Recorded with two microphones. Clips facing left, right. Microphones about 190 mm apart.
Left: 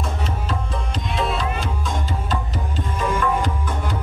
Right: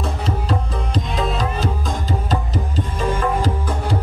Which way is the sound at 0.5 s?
40° right (ahead or behind).